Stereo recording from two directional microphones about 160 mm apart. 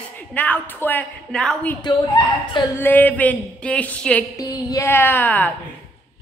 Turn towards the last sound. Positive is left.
turn(degrees=10)  # may be behind; listen again after turning